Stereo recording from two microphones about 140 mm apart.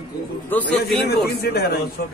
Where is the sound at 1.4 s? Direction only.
90° left.